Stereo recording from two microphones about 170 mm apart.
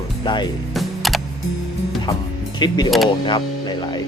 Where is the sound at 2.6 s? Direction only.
25° left (ahead or behind).